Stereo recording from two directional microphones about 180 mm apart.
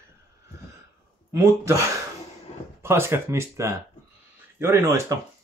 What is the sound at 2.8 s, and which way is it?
Speech, 15° right (ahead or behind).